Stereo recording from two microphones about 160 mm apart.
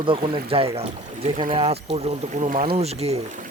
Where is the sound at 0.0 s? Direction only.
35° right (ahead or behind).